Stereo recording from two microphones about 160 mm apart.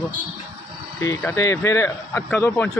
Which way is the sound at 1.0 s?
20° left (ahead or behind).